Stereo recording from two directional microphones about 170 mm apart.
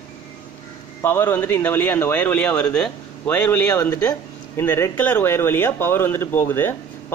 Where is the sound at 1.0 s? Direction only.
10° left (ahead or behind).